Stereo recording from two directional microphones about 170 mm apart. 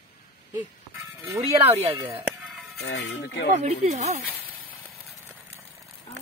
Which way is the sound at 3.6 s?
40° right (ahead or behind).